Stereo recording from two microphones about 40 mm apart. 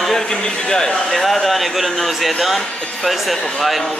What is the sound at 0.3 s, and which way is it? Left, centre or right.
Speech, centre.